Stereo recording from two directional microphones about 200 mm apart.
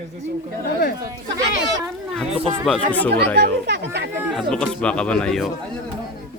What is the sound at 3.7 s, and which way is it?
Speech, 60° right (ahead or behind).